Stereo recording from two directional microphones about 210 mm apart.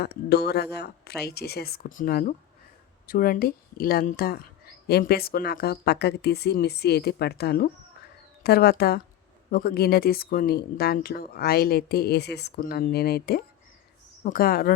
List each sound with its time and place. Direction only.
0.0 s speech: 50° left (ahead or behind)